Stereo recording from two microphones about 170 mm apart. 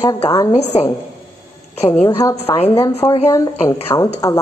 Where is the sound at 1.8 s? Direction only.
40° left (ahead or behind).